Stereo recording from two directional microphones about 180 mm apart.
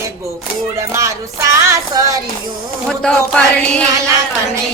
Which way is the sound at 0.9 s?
15° right (ahead or behind).